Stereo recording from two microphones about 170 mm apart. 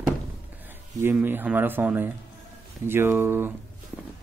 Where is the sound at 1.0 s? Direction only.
10° right (ahead or behind).